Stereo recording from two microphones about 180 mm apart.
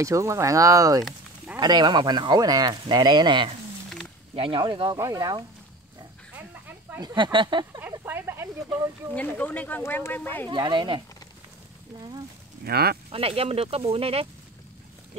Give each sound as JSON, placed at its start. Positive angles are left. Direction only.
{"t": 0.0, "sound": "speech", "side_deg": -15}
{"t": 7.0, "sound": "speech", "side_deg": -25}
{"t": 7.8, "sound": "a sound", "side_deg": -10}
{"t": 8.6, "sound": "speech", "side_deg": -20}
{"t": 9.1, "sound": "speech", "side_deg": 10}
{"t": 10.5, "sound": "speech", "side_deg": -25}
{"t": 12.6, "sound": "speech", "side_deg": -60}
{"t": 13.1, "sound": "speech", "side_deg": -30}